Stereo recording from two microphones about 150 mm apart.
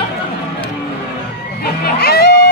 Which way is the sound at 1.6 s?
90° left.